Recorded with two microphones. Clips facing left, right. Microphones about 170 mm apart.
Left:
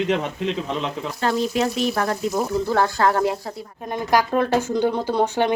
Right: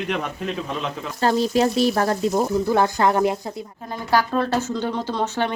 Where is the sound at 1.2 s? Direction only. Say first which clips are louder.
Right 3 dB; 35° right (ahead or behind).